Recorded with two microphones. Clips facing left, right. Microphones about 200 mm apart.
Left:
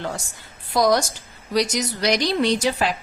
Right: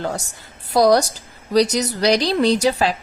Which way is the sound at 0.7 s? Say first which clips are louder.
Right 4 dB; 40° right (ahead or behind).